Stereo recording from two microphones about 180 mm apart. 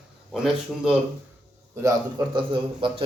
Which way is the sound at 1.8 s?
25° right (ahead or behind).